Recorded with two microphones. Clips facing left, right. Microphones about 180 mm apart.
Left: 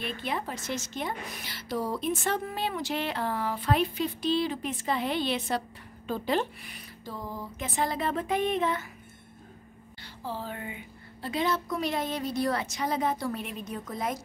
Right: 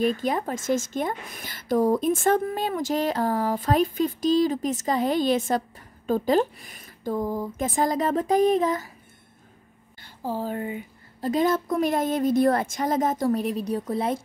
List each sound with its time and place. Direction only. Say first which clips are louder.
0.0 s a woman's voice: right 9 dB; 40° right (ahead or behind)
10.2 s a woman's voice: right 8 dB; 45° right (ahead or behind)